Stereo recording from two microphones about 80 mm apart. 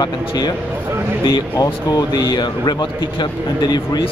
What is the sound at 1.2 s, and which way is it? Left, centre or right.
Speech, left.